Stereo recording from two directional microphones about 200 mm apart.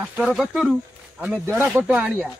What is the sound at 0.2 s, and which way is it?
A man's voice, centre (ahead or behind).